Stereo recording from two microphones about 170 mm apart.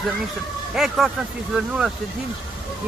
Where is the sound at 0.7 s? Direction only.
Centre (ahead or behind).